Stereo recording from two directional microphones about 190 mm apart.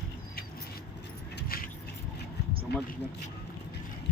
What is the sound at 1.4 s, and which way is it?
Keys jangling, 50° left (ahead or behind).